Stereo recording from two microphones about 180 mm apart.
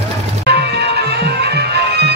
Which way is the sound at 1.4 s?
65° right (ahead or behind).